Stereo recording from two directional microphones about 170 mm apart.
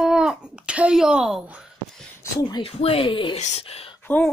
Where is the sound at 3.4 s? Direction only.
35° left (ahead or behind).